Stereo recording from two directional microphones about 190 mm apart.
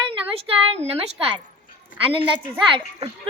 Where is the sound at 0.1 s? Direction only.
30° right (ahead or behind).